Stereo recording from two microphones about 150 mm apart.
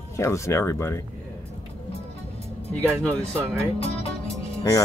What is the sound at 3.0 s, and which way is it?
Speech, 10° left (ahead or behind).